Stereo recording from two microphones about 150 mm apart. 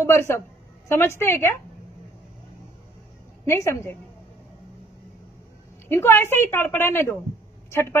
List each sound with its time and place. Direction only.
0.0 s a woman's voice: 15° left (ahead or behind)
3.4 s a woman's voice: 20° left (ahead or behind)
5.9 s a woman's voice: 15° left (ahead or behind)